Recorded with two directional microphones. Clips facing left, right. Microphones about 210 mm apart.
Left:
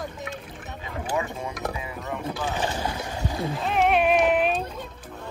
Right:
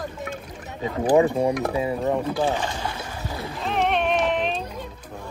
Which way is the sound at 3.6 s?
5° left (ahead or behind).